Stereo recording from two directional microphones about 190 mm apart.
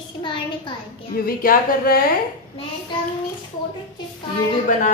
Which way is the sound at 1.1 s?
50° left (ahead or behind).